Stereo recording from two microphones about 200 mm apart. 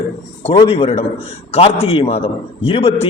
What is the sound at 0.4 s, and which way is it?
A man's voice, 30° left (ahead or behind).